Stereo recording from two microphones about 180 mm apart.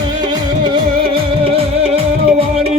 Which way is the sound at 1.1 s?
30° right (ahead or behind).